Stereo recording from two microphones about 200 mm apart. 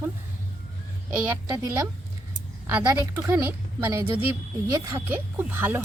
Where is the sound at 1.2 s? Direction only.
5° right (ahead or behind).